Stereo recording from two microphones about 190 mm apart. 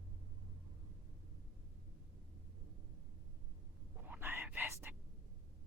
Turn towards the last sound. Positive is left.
turn(degrees=-10)  # may be behind; listen again after turning